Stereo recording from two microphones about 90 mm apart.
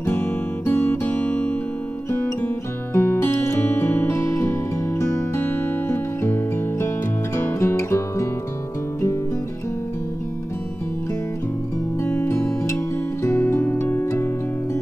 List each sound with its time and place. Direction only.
0.0 s music: 25° left (ahead or behind)
2.9 s music: 30° left (ahead or behind)
12.0 s music: 30° left (ahead or behind)